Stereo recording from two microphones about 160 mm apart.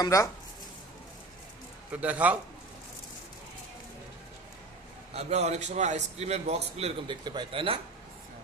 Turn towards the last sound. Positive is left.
turn(degrees=-35)  # may be behind; listen again after turning